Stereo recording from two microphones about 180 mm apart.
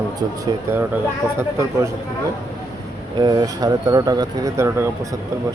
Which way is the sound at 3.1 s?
20° right (ahead or behind).